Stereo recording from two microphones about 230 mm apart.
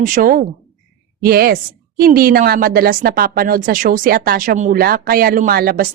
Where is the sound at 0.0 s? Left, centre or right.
Right.